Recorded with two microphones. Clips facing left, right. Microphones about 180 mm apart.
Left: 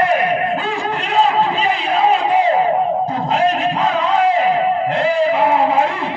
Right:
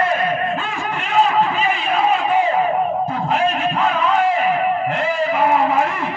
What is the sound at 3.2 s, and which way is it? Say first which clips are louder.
Music: left 3 dB; 35° left (ahead or behind).